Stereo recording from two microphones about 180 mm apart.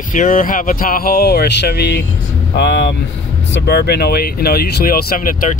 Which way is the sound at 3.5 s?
65° left (ahead or behind).